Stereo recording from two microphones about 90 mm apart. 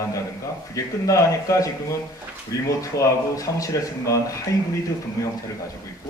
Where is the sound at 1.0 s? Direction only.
40° left (ahead or behind).